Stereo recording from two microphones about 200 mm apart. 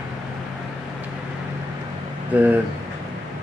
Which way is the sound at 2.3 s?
10° right (ahead or behind).